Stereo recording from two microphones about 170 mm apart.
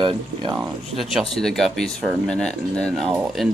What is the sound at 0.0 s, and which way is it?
Speech, 30° right (ahead or behind).